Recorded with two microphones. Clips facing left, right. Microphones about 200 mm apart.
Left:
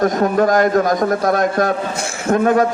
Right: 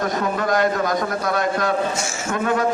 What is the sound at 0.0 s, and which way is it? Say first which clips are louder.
A man's voice: left 7 dB; 45° left (ahead or behind).